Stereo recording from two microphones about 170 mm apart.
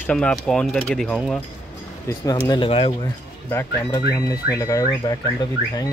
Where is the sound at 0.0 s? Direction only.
5° left (ahead or behind).